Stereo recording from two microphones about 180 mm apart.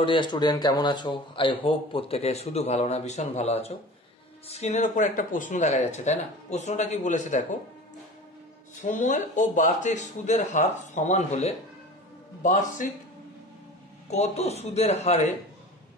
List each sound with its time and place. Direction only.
0.0 s a man's voice: 25° left (ahead or behind); by 7.4 s 45° left (ahead or behind)
8.8 s speech: 45° left (ahead or behind)
14.1 s speech: 35° left (ahead or behind)